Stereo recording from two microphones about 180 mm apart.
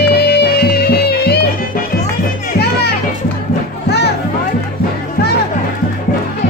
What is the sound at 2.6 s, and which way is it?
Children playing, 65° left (ahead or behind).